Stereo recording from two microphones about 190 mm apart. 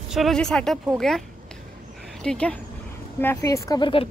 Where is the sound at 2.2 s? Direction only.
5° left (ahead or behind); by 4.1 s 25° left (ahead or behind).